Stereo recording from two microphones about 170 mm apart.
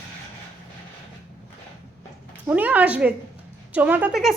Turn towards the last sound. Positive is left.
turn(degrees=0)  # may be behind; listen again after turning